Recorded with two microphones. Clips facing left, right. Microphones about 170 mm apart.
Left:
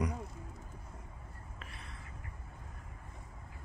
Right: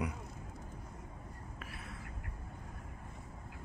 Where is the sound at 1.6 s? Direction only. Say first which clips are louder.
Right 3 dB; 5° right (ahead or behind).